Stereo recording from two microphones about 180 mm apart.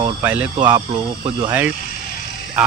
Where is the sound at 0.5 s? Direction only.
25° right (ahead or behind).